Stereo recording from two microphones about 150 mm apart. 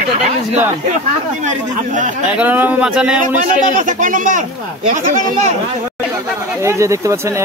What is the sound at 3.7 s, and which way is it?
Speech, 60° right (ahead or behind).